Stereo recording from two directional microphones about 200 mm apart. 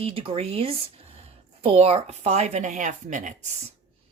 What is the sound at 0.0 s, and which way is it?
Speech, 25° right (ahead or behind).